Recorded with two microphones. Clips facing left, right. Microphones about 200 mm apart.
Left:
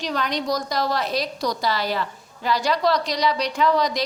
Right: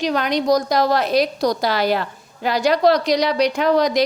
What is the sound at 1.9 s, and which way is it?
Speech, 55° right (ahead or behind).